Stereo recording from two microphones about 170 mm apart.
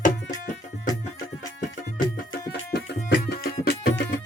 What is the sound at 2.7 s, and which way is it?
Music, 70° left (ahead or behind).